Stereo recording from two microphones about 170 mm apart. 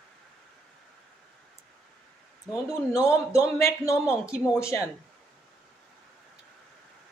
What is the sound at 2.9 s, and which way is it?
A man's voice, 20° left (ahead or behind).